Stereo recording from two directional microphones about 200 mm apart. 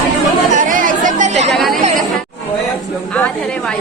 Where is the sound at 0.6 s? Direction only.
40° right (ahead or behind).